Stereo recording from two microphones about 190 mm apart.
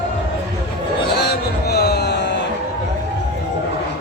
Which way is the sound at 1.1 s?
60° left (ahead or behind).